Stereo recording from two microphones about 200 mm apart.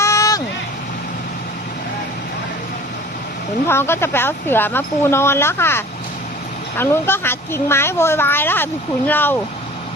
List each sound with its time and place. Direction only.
0.0 s vehicle: 15° left (ahead or behind)
3.7 s a woman's voice: 10° left (ahead or behind)